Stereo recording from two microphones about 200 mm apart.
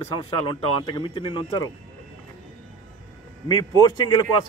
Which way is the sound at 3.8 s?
20° left (ahead or behind).